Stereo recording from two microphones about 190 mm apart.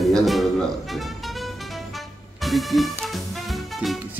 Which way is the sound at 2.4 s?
Centre (ahead or behind).